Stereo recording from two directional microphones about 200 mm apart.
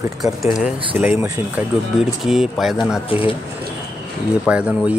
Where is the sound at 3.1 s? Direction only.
25° left (ahead or behind).